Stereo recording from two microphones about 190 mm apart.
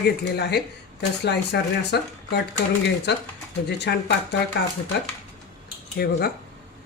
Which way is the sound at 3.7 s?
60° left (ahead or behind).